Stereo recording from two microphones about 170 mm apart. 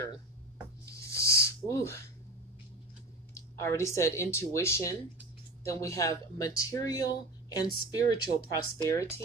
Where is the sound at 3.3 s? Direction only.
15° left (ahead or behind).